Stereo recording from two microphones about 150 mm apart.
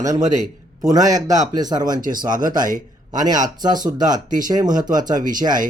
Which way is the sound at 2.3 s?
60° right (ahead or behind).